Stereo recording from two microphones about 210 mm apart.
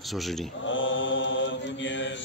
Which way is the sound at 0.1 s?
Centre (ahead or behind).